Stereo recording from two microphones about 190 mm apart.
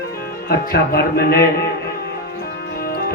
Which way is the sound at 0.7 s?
55° left (ahead or behind).